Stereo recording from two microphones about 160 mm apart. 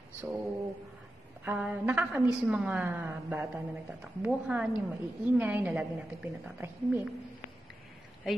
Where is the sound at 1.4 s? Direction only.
10° right (ahead or behind).